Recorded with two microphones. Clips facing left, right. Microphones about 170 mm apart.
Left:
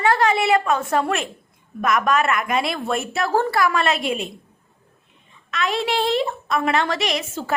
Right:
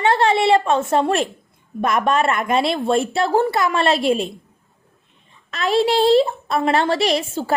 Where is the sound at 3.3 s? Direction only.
15° right (ahead or behind).